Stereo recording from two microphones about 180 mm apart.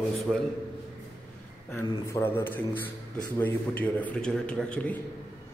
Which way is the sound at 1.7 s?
15° left (ahead or behind).